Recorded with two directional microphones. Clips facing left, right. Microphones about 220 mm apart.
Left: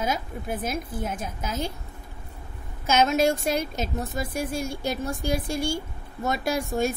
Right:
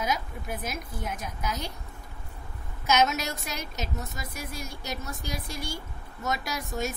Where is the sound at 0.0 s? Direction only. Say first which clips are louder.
Left 3 dB; 30° left (ahead or behind).